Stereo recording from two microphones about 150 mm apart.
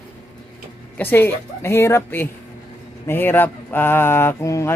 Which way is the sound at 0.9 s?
15° left (ahead or behind).